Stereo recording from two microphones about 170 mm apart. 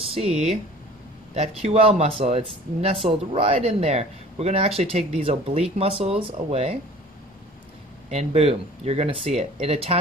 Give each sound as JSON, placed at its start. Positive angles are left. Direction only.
{"t": 0.0, "sound": "speech", "side_deg": -35}
{"t": 8.1, "sound": "speech", "side_deg": -35}